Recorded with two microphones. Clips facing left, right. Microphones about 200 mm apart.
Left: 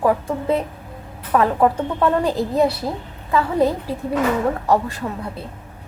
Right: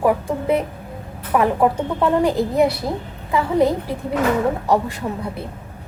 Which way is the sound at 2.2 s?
15° right (ahead or behind).